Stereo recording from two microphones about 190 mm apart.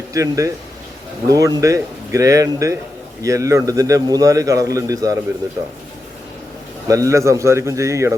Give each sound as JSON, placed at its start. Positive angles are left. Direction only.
{"t": 0.1, "sound": "a man's voice", "side_deg": -15}
{"t": 6.8, "sound": "a man's voice", "side_deg": -15}